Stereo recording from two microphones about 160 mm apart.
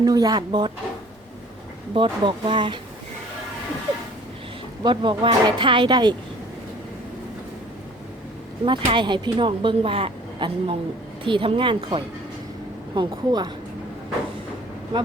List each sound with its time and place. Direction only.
0.0 s speech: 25° right (ahead or behind)
1.9 s speech: 30° right (ahead or behind)
4.8 s speech: 30° right (ahead or behind)
8.6 s speech: 30° right (ahead or behind)